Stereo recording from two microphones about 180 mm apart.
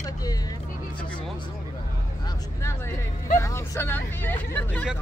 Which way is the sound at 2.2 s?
15° left (ahead or behind).